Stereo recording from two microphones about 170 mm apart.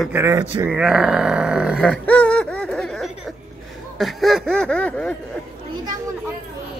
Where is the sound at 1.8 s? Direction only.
5° left (ahead or behind).